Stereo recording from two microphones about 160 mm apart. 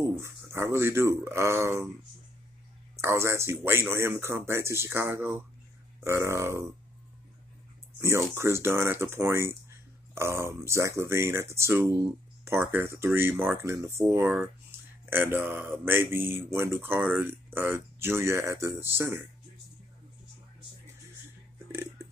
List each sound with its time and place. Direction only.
0.2 s speech: 15° right (ahead or behind)
3.0 s speech: 15° right (ahead or behind)
8.0 s speech: 15° right (ahead or behind)